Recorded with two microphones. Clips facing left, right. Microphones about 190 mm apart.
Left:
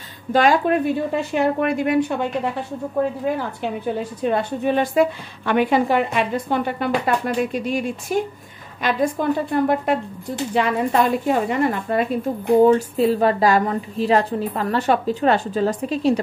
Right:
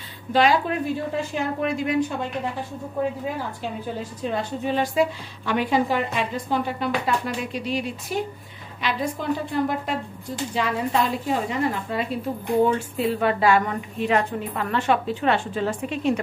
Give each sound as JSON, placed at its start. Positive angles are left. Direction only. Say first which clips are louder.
{"t": 0.3, "sound": "a woman's voice", "louder": "left 3 dB", "side_deg": 50}
{"t": 3.6, "sound": "a woman's voice", "louder": "left 6 dB", "side_deg": 60}
{"t": 12.6, "sound": "a woman's voice", "louder": "left 7 dB", "side_deg": 40}